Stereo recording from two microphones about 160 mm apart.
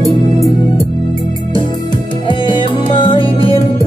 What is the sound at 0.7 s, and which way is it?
Music, 35° left (ahead or behind).